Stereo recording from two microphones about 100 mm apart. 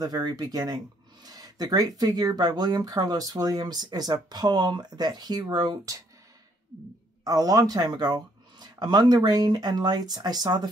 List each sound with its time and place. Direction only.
0.0 s speech: 45° right (ahead or behind)
7.2 s speech: 40° right (ahead or behind)